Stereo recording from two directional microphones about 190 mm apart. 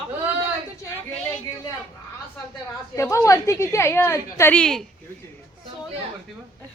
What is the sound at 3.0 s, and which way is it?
A woman's voice, 15° left (ahead or behind).